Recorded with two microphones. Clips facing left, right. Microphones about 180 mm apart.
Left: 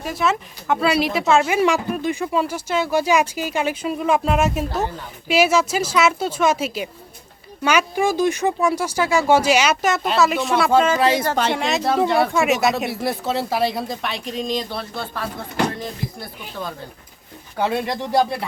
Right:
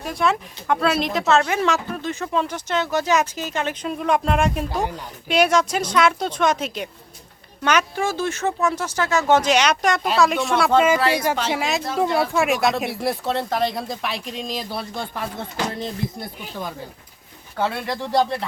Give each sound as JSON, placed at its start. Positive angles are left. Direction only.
{"t": 0.0, "sound": "speech", "side_deg": 0}
{"t": 17.6, "sound": "speech", "side_deg": 20}